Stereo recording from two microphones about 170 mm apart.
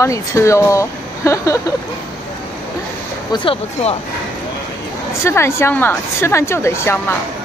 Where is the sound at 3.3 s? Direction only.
30° left (ahead or behind).